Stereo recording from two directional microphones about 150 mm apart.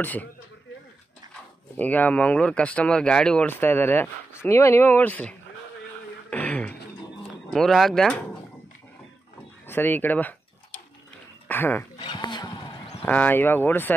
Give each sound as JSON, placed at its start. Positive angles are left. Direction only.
{"t": 0.0, "sound": "speech", "side_deg": 10}
{"t": 1.8, "sound": "speech", "side_deg": 10}
{"t": 6.3, "sound": "beatboxing", "side_deg": 10}
{"t": 7.5, "sound": "speech", "side_deg": 0}
{"t": 9.7, "sound": "speech", "side_deg": 15}
{"t": 11.4, "sound": "dog", "side_deg": 15}
{"t": 12.0, "sound": "a sound", "side_deg": 30}
{"t": 13.0, "sound": "speech", "side_deg": 10}